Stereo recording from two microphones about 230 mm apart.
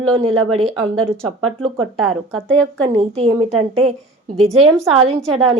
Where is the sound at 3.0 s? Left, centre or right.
Right.